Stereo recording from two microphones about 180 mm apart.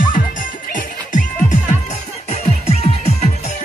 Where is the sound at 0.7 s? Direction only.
45° left (ahead or behind).